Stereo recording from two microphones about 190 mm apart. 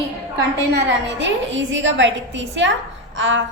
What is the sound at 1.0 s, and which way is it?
A woman's voice, 75° right (ahead or behind).